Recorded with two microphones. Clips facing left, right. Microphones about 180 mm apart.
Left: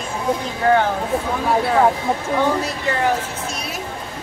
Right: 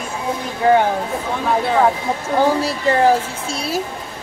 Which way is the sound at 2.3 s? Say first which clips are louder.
Right 7 dB; 35° right (ahead or behind).